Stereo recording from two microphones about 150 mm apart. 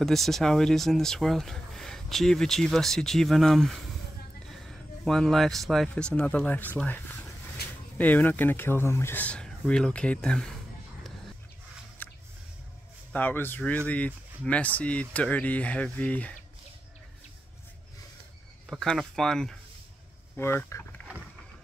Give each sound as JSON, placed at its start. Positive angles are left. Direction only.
{"t": 0.0, "sound": "speech", "side_deg": 0}
{"t": 12.0, "sound": "squish", "side_deg": 15}
{"t": 13.1, "sound": "speech", "side_deg": 15}
{"t": 18.7, "sound": "speech", "side_deg": 0}
{"t": 20.3, "sound": "speech", "side_deg": 15}